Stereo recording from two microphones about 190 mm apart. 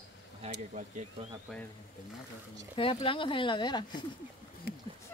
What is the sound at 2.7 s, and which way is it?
Speech, 30° left (ahead or behind).